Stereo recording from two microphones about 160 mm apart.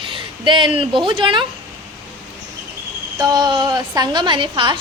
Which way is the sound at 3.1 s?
25° right (ahead or behind).